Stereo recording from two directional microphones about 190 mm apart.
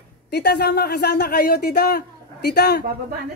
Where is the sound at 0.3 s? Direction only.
55° left (ahead or behind).